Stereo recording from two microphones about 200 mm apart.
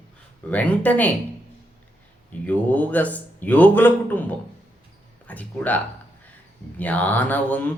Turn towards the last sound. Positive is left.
turn(degrees=10)  # may be behind; listen again after turning